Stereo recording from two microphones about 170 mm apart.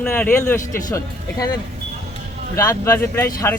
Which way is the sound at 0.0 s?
10° left (ahead or behind).